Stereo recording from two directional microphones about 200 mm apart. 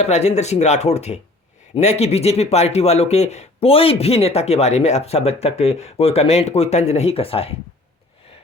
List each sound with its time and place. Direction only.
0.0 s speech: 35° left (ahead or behind)